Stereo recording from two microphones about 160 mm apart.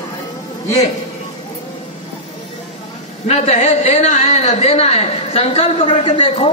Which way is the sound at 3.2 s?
45° left (ahead or behind).